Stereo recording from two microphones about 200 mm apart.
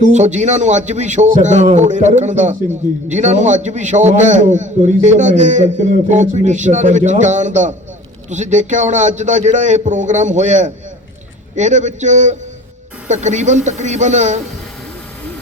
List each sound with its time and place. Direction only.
0.0 s a man's voice: 35° right (ahead or behind)